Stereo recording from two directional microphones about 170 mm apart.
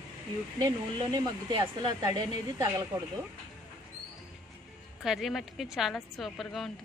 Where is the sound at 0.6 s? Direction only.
25° right (ahead or behind).